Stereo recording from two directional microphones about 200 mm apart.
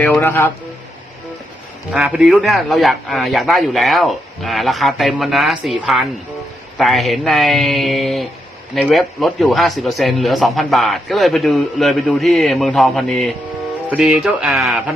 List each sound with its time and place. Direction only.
0.0 s a man's voice: 10° left (ahead or behind)
1.9 s speech: 5° right (ahead or behind)